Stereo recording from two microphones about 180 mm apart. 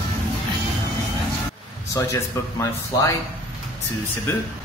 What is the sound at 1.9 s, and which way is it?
Speech, 15° left (ahead or behind).